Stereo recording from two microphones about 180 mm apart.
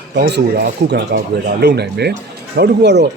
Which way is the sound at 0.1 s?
70° right (ahead or behind).